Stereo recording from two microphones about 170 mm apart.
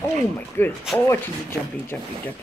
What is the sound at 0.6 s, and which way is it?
Speech, 15° left (ahead or behind).